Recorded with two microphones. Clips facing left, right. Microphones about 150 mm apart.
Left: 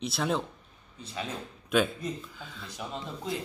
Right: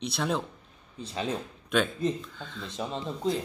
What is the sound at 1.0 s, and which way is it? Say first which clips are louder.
Speech: right 3 dB; 30° right (ahead or behind).